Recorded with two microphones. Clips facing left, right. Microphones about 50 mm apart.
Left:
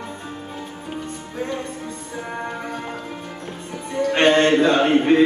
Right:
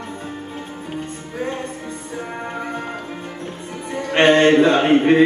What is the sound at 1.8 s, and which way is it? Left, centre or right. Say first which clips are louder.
Music: right 2 dB; centre.